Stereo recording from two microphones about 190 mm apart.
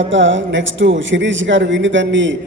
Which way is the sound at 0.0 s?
80° right.